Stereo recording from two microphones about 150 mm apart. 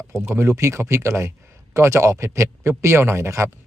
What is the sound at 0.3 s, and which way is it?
Speech, 20° right (ahead or behind).